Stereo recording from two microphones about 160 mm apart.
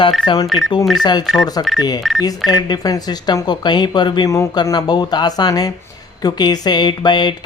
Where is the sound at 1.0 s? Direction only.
25° left (ahead or behind).